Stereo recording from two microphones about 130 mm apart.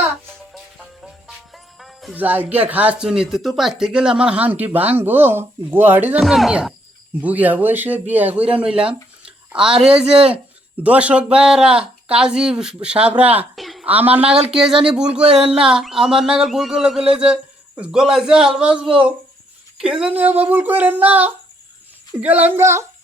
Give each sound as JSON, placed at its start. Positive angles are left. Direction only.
{"t": 1.8, "sound": "music", "side_deg": 0}
{"t": 2.1, "sound": "speech", "side_deg": -15}
{"t": 6.1, "sound": "speech", "side_deg": 0}
{"t": 13.6, "sound": "a sound", "side_deg": 0}
{"t": 13.8, "sound": "speech", "side_deg": -10}